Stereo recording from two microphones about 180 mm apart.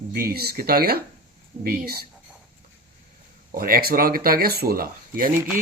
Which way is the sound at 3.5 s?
55° right (ahead or behind).